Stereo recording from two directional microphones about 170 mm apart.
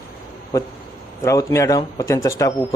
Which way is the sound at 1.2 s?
15° left (ahead or behind).